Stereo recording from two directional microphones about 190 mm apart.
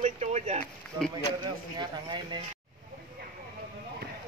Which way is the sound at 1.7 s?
25° right (ahead or behind).